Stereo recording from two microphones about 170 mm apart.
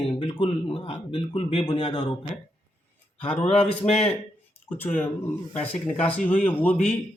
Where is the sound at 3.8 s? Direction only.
10° left (ahead or behind).